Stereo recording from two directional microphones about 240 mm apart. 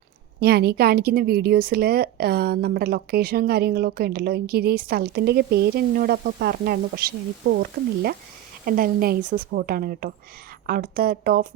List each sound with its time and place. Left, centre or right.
0.3 s a woman's voice: right